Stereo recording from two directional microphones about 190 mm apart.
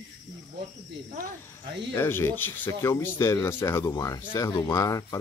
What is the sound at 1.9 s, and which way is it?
Speech, 10° left (ahead or behind).